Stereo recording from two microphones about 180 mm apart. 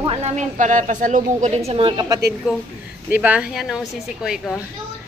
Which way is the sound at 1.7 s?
25° right (ahead or behind).